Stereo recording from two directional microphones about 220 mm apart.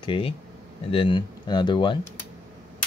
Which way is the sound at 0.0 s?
25° left (ahead or behind).